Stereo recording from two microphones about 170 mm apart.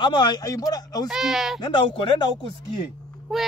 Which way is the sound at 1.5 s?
25° left (ahead or behind).